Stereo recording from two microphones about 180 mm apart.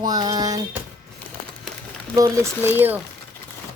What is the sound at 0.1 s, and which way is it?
Speech, 25° right (ahead or behind).